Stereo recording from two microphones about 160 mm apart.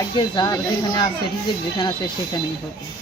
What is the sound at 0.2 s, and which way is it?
Speech, 25° left (ahead or behind).